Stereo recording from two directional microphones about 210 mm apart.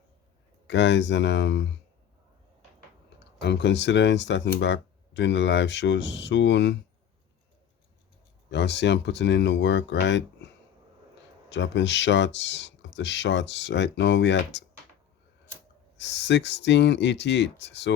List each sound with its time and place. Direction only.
0.7 s speech: 60° left (ahead or behind)
3.2 s speech: 55° left (ahead or behind)
8.4 s speech: 55° left (ahead or behind)
11.4 s speech: 60° left (ahead or behind)
16.0 s speech: 55° left (ahead or behind)